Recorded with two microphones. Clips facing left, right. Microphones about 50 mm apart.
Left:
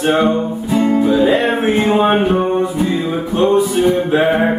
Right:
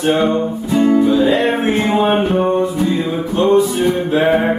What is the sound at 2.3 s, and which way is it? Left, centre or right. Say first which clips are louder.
Music: right 1 dB; centre.